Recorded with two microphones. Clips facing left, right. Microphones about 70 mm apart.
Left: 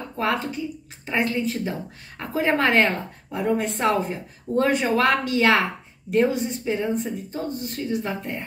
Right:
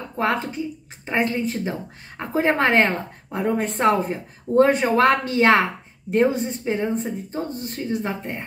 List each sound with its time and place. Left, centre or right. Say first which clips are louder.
1.0 s a woman's voice: right 1 dB; right
3.3 s a woman's voice: even; right